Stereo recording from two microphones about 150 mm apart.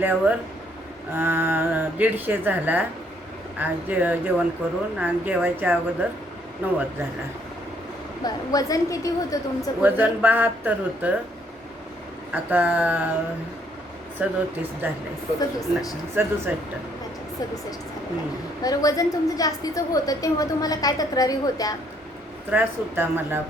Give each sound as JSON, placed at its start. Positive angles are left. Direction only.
{"t": 0.0, "sound": "speech", "side_deg": -10}
{"t": 8.2, "sound": "a woman's voice", "side_deg": 25}
{"t": 9.8, "sound": "speech", "side_deg": -10}
{"t": 12.3, "sound": "speech", "side_deg": -10}
{"t": 14.2, "sound": "speech", "side_deg": -10}
{"t": 15.4, "sound": "a woman's voice", "side_deg": 25}
{"t": 16.2, "sound": "speech", "side_deg": -15}
{"t": 18.6, "sound": "a woman's voice", "side_deg": 25}
{"t": 22.4, "sound": "speech", "side_deg": -10}